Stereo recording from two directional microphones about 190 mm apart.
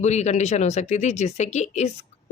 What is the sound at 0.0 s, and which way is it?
Speech, 35° left (ahead or behind).